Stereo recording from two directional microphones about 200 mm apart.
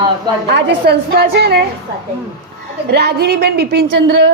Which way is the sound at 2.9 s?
55° right (ahead or behind).